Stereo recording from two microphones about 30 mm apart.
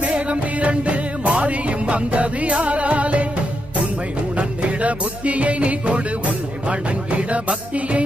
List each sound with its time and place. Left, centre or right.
0.0 s music: right
4.4 s music: right